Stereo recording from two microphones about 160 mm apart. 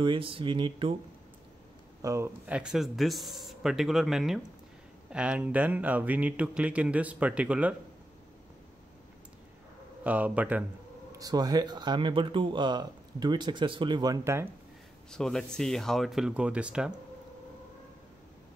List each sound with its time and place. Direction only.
0.0 s speech: 30° right (ahead or behind)
2.0 s speech: 20° right (ahead or behind)
10.0 s speech: 10° right (ahead or behind)
11.1 s speech: 20° right (ahead or behind)
15.0 s speech: 5° left (ahead or behind)